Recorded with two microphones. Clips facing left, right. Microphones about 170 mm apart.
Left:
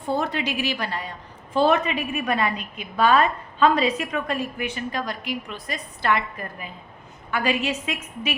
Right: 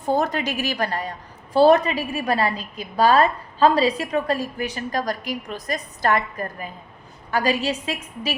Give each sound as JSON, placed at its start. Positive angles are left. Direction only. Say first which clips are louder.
{"t": 0.0, "sound": "a woman's voice", "louder": "right 3 dB", "side_deg": -45}